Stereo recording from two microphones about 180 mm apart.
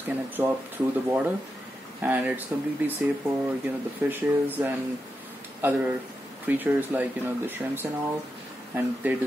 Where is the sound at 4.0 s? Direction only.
10° right (ahead or behind).